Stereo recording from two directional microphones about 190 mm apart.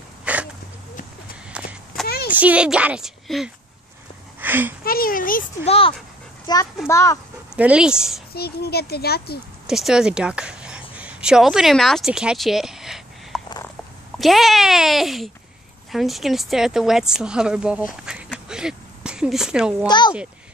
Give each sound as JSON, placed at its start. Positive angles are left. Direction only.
{"t": 0.2, "sound": "a sound", "side_deg": -5}
{"t": 1.5, "sound": "walk", "side_deg": -5}
{"t": 2.0, "sound": "a sound", "side_deg": 55}
{"t": 2.3, "sound": "a woman's voice", "side_deg": -5}
{"t": 4.4, "sound": "a sound", "side_deg": -10}
{"t": 4.8, "sound": "a child's voice", "side_deg": 50}
{"t": 5.7, "sound": "a child's voice", "side_deg": 30}
{"t": 7.5, "sound": "a woman's voice", "side_deg": -5}
{"t": 8.4, "sound": "speech", "side_deg": 55}
{"t": 9.7, "sound": "a woman's voice", "side_deg": 0}
{"t": 18.0, "sound": "a sound", "side_deg": -5}
{"t": 19.9, "sound": "speech", "side_deg": 25}